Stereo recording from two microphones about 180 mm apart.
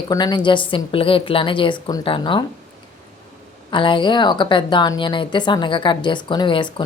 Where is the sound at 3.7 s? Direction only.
25° left (ahead or behind).